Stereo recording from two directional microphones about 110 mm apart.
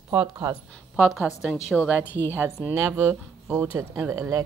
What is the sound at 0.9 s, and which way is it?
Speech, 5° right (ahead or behind).